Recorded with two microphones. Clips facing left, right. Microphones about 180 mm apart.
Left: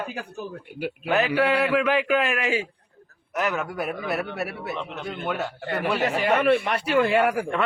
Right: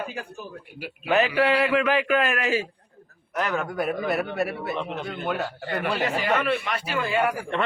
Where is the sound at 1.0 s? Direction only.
Centre (ahead or behind).